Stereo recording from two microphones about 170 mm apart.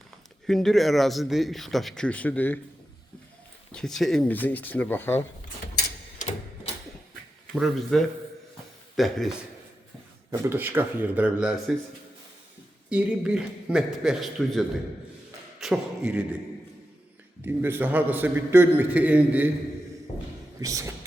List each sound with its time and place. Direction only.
0.4 s speech: centre (ahead or behind)
3.7 s speech: 5° left (ahead or behind)
7.5 s speech: centre (ahead or behind)
10.3 s a man's voice: 15° right (ahead or behind)
12.9 s speech: 5° right (ahead or behind)
15.6 s a man's voice: 5° right (ahead or behind)
17.4 s a man's voice: 10° right (ahead or behind)
20.6 s speech: 20° right (ahead or behind)